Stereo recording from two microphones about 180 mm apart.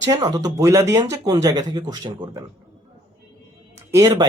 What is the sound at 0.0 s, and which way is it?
Speech, 20° right (ahead or behind).